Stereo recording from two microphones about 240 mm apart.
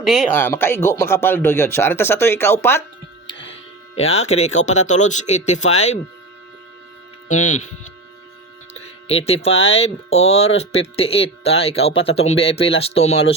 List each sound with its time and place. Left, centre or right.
0.3 s speech: centre
3.5 s speech: left
8.7 s speech: left